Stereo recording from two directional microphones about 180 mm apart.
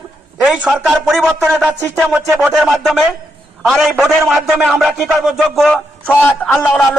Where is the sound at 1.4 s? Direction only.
10° right (ahead or behind).